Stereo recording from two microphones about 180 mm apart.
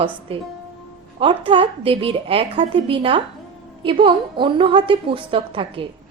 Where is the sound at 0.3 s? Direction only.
30° right (ahead or behind).